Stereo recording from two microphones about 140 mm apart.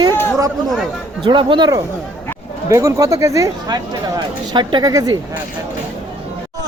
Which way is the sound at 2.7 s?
20° right (ahead or behind).